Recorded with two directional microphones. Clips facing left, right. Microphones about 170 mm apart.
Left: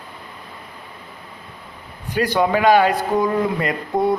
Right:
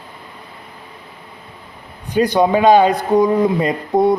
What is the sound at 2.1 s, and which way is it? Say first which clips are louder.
A man's voice: right 4 dB; 20° right (ahead or behind).